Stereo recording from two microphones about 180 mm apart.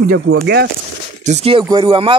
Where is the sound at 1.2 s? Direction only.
35° right (ahead or behind).